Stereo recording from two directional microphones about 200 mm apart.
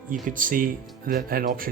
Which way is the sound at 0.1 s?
40° right (ahead or behind).